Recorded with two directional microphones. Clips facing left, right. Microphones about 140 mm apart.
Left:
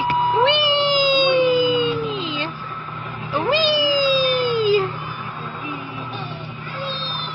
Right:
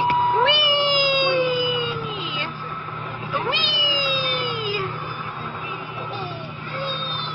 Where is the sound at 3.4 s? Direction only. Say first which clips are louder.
Left 9 dB; 40° left (ahead or behind).